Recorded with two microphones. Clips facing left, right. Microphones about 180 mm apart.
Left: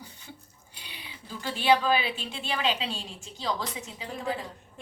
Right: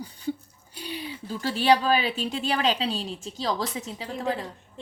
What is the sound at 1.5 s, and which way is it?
A woman's voice, 40° right (ahead or behind).